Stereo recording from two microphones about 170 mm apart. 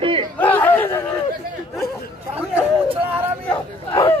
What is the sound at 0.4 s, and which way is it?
Chatter, 10° left (ahead or behind).